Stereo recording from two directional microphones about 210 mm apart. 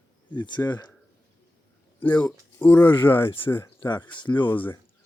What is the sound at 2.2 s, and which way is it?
Speech, 5° left (ahead or behind).